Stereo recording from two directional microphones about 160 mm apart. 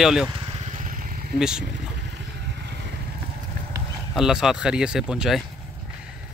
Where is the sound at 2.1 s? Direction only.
90° right.